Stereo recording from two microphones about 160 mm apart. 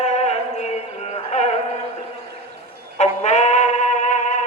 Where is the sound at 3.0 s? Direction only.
45° left (ahead or behind).